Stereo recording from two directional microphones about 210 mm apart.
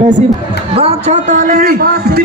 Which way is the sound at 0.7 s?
30° right (ahead or behind).